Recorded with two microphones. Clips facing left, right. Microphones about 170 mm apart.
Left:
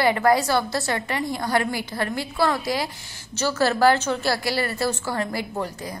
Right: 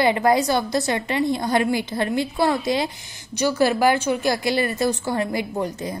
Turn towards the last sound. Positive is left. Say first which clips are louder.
# right 3 dB
turn(degrees=-20)  # may be behind; listen again after turning